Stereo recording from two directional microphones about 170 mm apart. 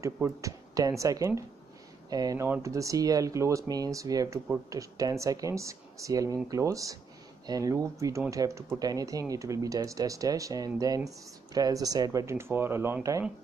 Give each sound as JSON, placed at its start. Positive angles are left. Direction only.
{"t": 0.0, "sound": "speech", "side_deg": -20}